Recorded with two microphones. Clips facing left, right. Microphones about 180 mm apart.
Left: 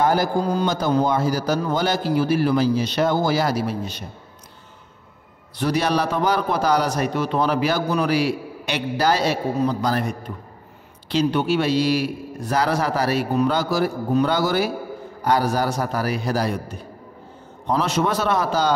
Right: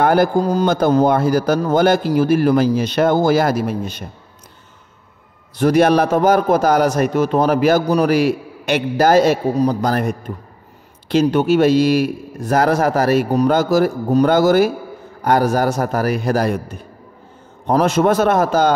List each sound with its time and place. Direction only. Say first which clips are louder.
0.0 s a man's voice: right 5 dB; 55° right (ahead or behind)
5.6 s a man's voice: right 8 dB; 50° right (ahead or behind)